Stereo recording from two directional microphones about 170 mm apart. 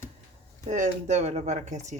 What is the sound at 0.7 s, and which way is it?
Speech, 45° right (ahead or behind).